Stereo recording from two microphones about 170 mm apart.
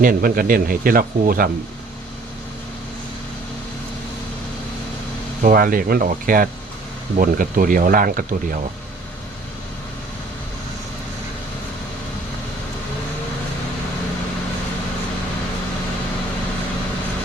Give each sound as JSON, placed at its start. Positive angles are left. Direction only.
{"t": 0.0, "sound": "speech", "side_deg": -60}
{"t": 5.4, "sound": "speech", "side_deg": -55}